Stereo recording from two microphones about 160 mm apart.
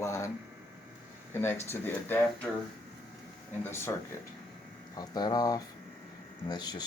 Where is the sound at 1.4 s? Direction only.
15° left (ahead or behind).